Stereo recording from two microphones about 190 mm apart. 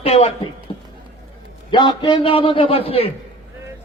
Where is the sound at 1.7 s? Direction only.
25° left (ahead or behind).